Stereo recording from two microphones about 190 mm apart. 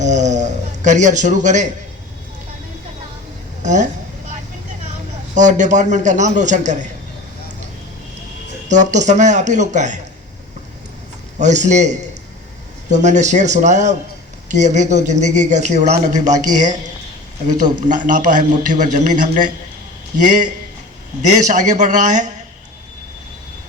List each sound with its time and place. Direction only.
0.0 s speech: 40° right (ahead or behind)
3.6 s speech: 40° right (ahead or behind)
5.3 s speech: 40° right (ahead or behind)
8.7 s speech: 40° right (ahead or behind)
11.3 s a man's voice: 40° right (ahead or behind)